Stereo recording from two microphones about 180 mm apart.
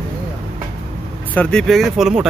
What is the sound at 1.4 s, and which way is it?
Speech, 5° left (ahead or behind).